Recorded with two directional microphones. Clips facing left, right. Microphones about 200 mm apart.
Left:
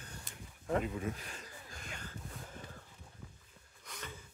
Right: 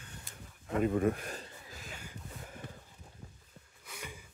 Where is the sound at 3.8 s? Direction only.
10° right (ahead or behind).